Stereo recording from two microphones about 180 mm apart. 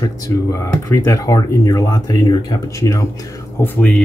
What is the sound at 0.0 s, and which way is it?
Speech, 15° left (ahead or behind).